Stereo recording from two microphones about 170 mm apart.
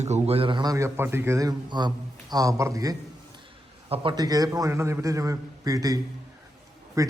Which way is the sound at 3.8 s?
30° right (ahead or behind).